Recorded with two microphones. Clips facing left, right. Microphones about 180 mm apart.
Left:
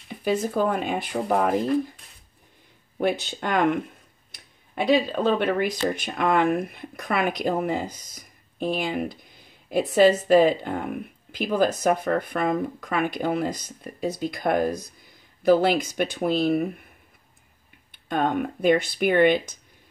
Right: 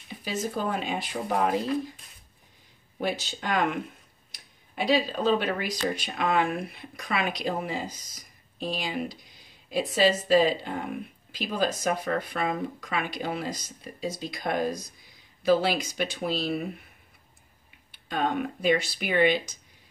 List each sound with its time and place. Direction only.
0.2 s speech: 55° left (ahead or behind)
3.0 s speech: 55° left (ahead or behind)
4.7 s speech: 55° left (ahead or behind)
17.9 s speech: 50° left (ahead or behind)